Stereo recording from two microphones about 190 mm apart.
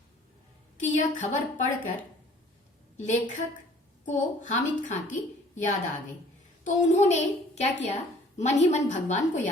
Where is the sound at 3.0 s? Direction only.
40° left (ahead or behind).